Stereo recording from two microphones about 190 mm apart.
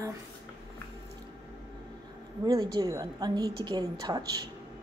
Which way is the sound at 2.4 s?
20° right (ahead or behind).